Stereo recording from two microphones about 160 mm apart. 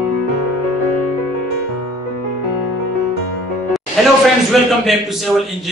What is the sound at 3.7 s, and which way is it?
A man's voice, centre (ahead or behind).